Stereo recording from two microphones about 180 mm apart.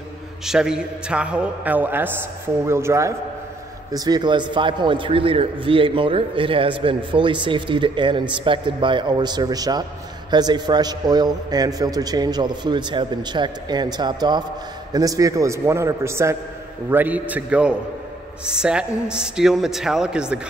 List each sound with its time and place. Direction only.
0.5 s a man's voice: 5° right (ahead or behind)